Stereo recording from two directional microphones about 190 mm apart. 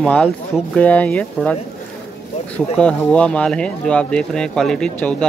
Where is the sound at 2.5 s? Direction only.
5° left (ahead or behind).